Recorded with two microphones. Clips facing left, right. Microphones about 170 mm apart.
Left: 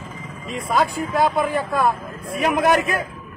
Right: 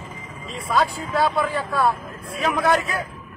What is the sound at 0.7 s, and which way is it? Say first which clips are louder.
A man's voice: left 1 dB; 20° left (ahead or behind).